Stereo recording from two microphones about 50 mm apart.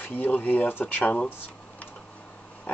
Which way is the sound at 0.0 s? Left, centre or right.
Left.